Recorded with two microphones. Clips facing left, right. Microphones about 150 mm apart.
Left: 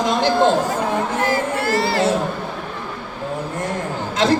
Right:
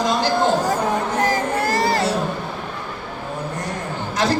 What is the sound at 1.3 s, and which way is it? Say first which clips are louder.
Music: left 1 dB; 40° right (ahead or behind).